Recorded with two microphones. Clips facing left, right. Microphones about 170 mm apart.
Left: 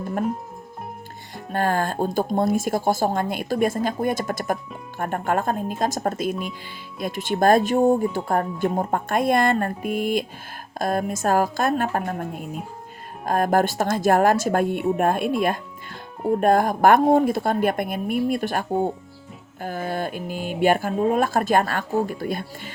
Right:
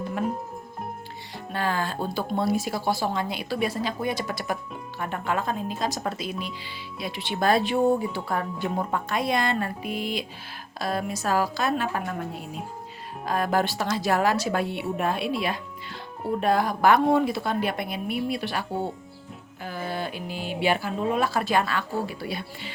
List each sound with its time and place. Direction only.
1.5 s speech: 50° left (ahead or behind)